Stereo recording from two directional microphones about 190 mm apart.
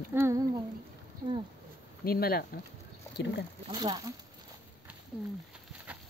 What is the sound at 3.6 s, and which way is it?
Speech, 20° right (ahead or behind).